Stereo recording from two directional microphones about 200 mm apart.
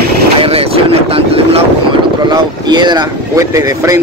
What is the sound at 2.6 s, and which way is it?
Speech, 20° right (ahead or behind).